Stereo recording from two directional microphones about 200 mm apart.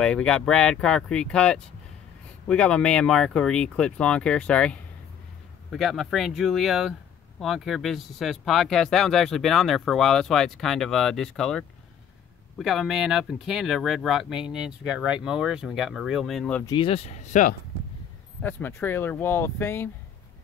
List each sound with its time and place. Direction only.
0.0 s speech: 5° left (ahead or behind)
16.6 s speech: 25° left (ahead or behind)
18.4 s speech: 10° left (ahead or behind)